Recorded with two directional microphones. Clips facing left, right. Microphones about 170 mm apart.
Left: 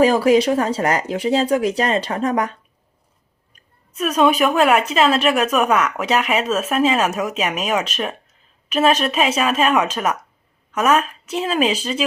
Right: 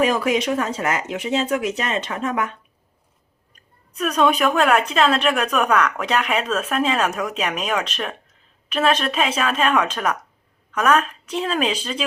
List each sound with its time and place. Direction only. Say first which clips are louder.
0.0 s speech: left 6 dB; 30° left (ahead or behind)
3.9 s a woman's voice: left 2 dB; 5° left (ahead or behind)